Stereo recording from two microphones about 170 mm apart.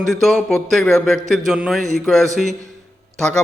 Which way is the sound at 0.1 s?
Centre (ahead or behind).